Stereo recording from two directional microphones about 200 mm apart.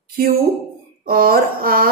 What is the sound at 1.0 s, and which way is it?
Speech, 45° right (ahead or behind).